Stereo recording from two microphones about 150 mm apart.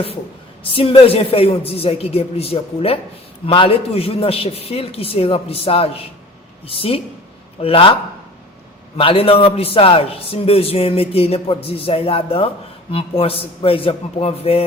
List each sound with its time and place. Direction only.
0.6 s a man's voice: 35° left (ahead or behind)
9.0 s a man's voice: 40° left (ahead or behind)